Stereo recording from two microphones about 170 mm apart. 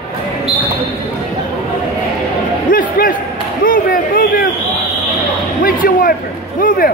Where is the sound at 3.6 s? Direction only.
55° left (ahead or behind).